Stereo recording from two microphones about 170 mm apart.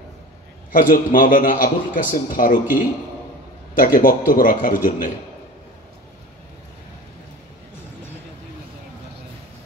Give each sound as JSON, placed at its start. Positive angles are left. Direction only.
{"t": 0.7, "sound": "a man's voice", "side_deg": 50}